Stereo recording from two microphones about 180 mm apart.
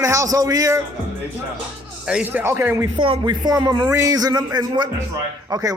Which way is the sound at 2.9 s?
25° right (ahead or behind).